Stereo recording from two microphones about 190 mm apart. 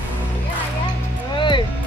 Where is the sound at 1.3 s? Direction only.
25° left (ahead or behind).